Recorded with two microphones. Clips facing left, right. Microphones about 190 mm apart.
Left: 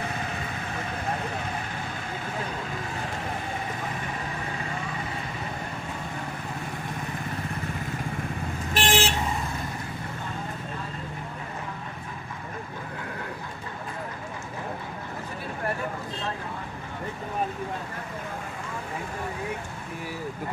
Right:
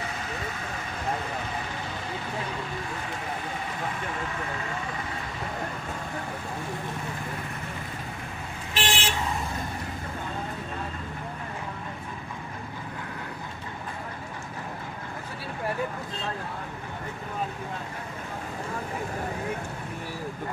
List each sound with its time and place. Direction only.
8.7 s vehicle: 45° left (ahead or behind)